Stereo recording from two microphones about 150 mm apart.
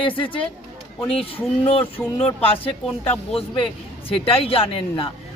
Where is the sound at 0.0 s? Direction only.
35° left (ahead or behind).